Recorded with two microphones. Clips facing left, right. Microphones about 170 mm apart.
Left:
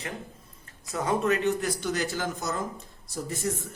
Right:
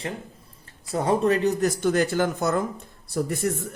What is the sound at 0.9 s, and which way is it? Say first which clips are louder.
Speech: right 4 dB; 30° right (ahead or behind).